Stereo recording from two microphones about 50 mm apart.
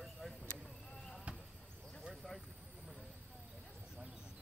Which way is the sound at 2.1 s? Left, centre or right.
Centre.